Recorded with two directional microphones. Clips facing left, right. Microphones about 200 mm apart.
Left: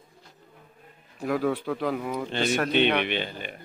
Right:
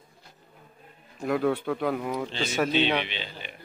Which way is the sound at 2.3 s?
60° left (ahead or behind).